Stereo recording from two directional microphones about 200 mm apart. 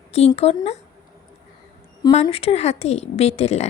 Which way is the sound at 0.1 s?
30° left (ahead or behind).